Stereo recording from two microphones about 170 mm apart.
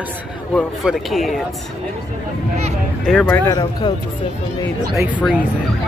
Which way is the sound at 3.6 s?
25° left (ahead or behind).